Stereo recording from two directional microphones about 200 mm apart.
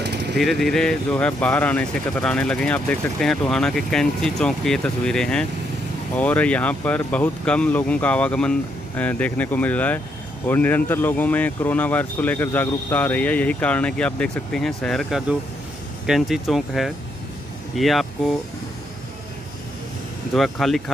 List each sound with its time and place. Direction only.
0.0 s a sound: 55° right (ahead or behind)
0.4 s speech: centre (ahead or behind)
20.3 s speech: centre (ahead or behind)